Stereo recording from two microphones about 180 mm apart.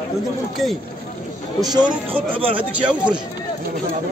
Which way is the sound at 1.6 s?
20° right (ahead or behind).